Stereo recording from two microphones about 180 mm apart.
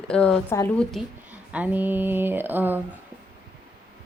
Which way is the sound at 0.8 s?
5° left (ahead or behind).